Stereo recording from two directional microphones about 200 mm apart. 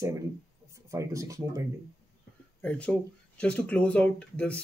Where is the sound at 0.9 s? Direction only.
15° right (ahead or behind).